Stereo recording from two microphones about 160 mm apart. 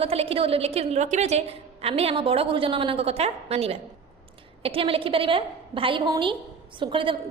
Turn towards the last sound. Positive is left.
turn(degrees=-30)  # may be behind; listen again after turning